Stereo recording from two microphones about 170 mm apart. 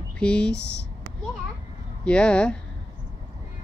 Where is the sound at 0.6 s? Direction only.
80° left.